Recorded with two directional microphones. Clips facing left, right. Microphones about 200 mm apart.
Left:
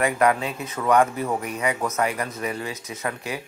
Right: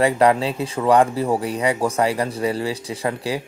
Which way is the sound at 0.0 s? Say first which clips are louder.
Right 4 dB; 30° right (ahead or behind).